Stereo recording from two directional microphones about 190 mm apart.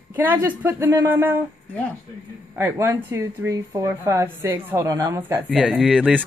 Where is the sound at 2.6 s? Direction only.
15° right (ahead or behind).